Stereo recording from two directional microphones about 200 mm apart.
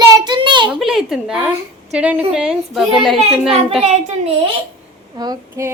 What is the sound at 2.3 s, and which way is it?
Speech, 5° right (ahead or behind).